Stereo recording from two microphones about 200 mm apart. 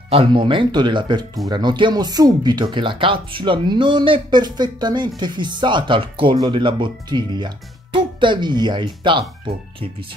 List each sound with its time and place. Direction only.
0.1 s speech: 25° right (ahead or behind)